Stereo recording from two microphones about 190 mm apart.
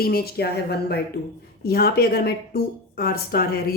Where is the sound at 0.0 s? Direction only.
55° left (ahead or behind).